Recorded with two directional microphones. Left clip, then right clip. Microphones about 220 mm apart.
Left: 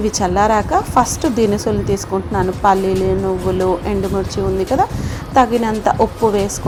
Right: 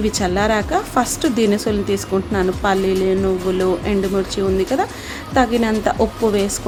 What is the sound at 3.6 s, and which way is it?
Speech, centre (ahead or behind).